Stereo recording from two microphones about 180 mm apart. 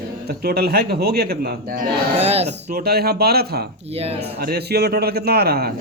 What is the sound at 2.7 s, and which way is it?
A man's voice, 60° right (ahead or behind).